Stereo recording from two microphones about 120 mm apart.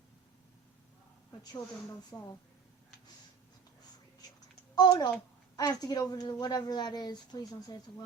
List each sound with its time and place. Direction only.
1.5 s a woman's voice: 35° left (ahead or behind)
4.7 s a child's voice: 35° left (ahead or behind)